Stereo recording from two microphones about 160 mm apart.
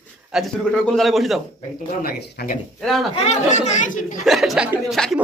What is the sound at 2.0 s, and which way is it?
Speech, 65° left (ahead or behind).